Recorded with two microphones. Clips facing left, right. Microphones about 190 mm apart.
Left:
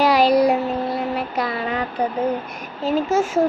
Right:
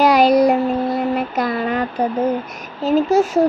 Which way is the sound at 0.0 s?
45° right (ahead or behind).